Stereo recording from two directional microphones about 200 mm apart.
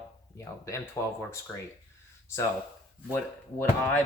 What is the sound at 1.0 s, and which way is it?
Speech, 10° left (ahead or behind).